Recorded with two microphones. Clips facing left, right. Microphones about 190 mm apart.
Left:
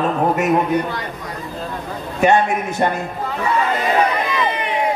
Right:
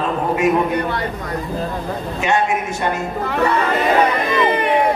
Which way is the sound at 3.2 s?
70° right (ahead or behind).